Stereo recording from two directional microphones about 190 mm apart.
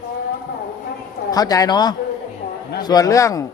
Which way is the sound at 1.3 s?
20° left (ahead or behind).